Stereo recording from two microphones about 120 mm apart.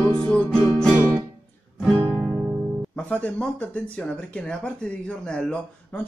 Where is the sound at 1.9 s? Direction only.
20° right (ahead or behind).